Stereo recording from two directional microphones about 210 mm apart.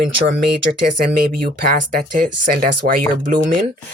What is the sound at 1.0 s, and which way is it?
Speech, 45° right (ahead or behind).